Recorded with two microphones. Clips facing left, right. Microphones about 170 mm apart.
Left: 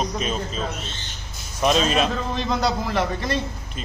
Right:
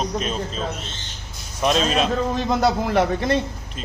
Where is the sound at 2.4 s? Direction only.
50° right (ahead or behind).